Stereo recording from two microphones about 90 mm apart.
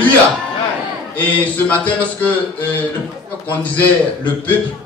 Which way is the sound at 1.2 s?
15° left (ahead or behind).